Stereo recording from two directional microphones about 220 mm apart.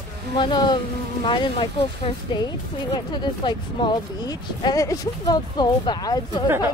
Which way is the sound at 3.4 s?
20° left (ahead or behind).